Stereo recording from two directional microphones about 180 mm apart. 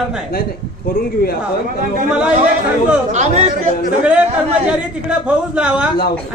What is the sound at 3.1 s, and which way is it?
Speech, 40° right (ahead or behind).